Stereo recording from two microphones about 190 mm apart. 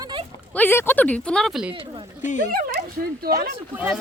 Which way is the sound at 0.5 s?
10° left (ahead or behind).